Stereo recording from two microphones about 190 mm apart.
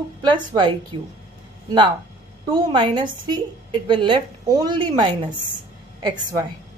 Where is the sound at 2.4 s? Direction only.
25° right (ahead or behind).